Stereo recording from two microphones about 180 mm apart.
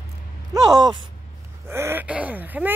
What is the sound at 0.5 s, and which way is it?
Speech, 20° right (ahead or behind).